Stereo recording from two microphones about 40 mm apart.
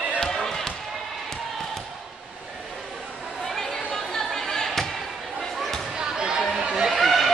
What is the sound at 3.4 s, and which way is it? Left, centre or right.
Chatter, centre.